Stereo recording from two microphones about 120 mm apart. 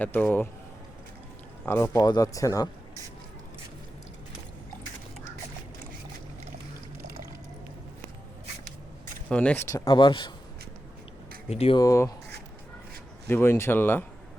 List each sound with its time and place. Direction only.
0.0 s a man's voice: 15° left (ahead or behind)
1.6 s speech: 20° left (ahead or behind)
2.0 s speech: 35° left (ahead or behind)
9.3 s a man's voice: 10° left (ahead or behind)
9.7 s speech: 30° left (ahead or behind)
10.0 s a man's voice: 40° left (ahead or behind)
11.4 s speech: 60° left (ahead or behind)
11.8 s speech: 30° left (ahead or behind)
13.2 s speech: 20° left (ahead or behind)